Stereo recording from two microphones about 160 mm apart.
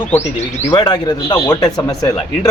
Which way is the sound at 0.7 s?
30° left (ahead or behind).